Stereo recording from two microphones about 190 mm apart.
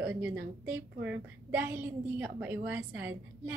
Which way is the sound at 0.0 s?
10° right (ahead or behind).